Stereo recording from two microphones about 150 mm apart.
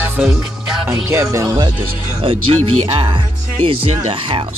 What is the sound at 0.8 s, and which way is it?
Music, 15° right (ahead or behind).